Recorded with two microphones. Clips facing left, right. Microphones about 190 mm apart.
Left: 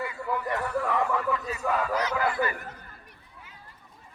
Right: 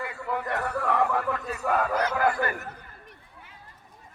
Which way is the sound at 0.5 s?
60° right (ahead or behind).